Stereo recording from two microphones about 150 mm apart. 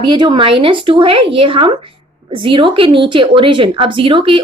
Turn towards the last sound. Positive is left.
turn(degrees=-35)  # may be behind; listen again after turning